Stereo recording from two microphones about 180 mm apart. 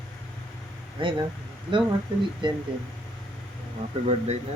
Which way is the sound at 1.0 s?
25° right (ahead or behind).